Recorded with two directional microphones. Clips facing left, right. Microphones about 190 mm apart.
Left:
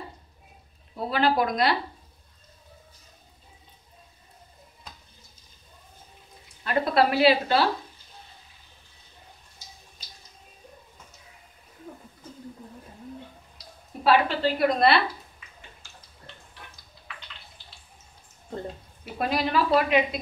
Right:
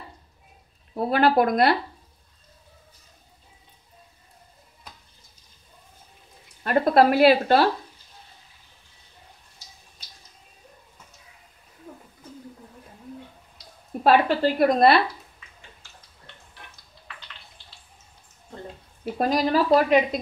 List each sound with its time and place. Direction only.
0.9 s speech: 55° right (ahead or behind)
6.6 s a woman's voice: 50° right (ahead or behind)
14.0 s a woman's voice: 45° right (ahead or behind)
19.1 s a woman's voice: 40° right (ahead or behind)